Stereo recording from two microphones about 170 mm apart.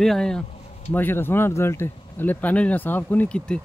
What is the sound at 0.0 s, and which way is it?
Speech, 5° left (ahead or behind).